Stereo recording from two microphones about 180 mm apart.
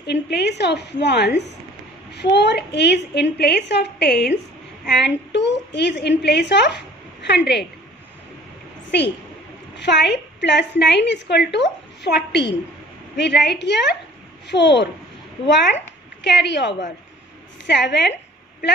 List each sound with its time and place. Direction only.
0.0 s a woman's voice: 70° left (ahead or behind)
9.8 s a woman's voice: 70° left (ahead or behind)